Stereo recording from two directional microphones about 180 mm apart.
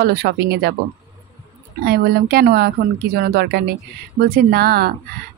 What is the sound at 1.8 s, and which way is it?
A woman's voice, 60° right (ahead or behind).